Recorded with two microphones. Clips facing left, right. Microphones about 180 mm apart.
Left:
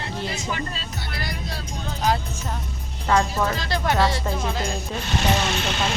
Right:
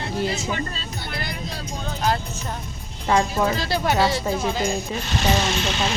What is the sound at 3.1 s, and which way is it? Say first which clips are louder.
Speech: right 1 dB; 15° right (ahead or behind).